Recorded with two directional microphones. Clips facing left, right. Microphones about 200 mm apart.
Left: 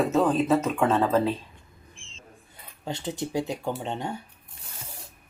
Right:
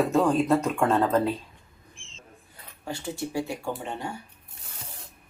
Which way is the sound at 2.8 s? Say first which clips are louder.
Left 1 dB; 20° left (ahead or behind).